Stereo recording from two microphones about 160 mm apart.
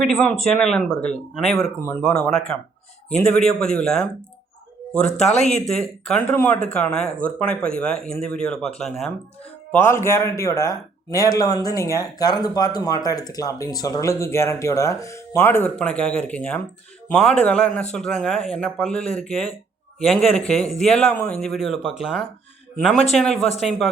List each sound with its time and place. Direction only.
0.0 s speech: centre (ahead or behind)
5.0 s a man's voice: 45° left (ahead or behind)
5.7 s speech: 5° left (ahead or behind)
9.7 s a man's voice: 15° left (ahead or behind)